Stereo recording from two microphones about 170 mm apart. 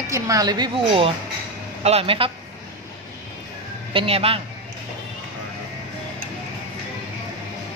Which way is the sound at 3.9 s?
35° right (ahead or behind).